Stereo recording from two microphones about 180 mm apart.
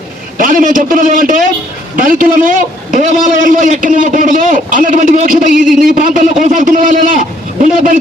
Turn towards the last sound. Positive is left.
turn(degrees=-50)  # may be behind; listen again after turning